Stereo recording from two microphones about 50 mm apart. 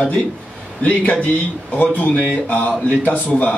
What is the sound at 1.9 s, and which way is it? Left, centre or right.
Speech, left.